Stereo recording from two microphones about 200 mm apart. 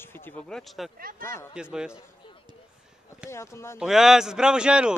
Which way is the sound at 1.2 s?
15° left (ahead or behind).